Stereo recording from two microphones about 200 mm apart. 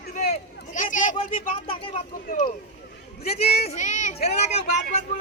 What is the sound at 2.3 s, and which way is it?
Speech, 40° left (ahead or behind).